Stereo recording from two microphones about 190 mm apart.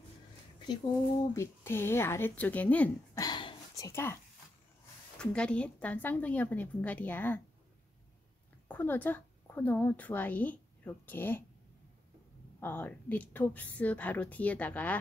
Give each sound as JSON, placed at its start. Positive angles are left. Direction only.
{"t": 1.3, "sound": "speech", "side_deg": 15}
{"t": 3.2, "sound": "a sound", "side_deg": 25}
{"t": 5.2, "sound": "speech", "side_deg": 5}
{"t": 8.6, "sound": "a woman's voice", "side_deg": 10}
{"t": 12.5, "sound": "speech", "side_deg": 10}